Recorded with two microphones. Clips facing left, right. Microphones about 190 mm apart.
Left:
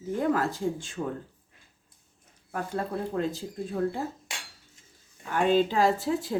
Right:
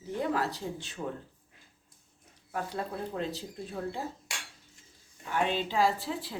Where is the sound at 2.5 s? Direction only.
50° left (ahead or behind).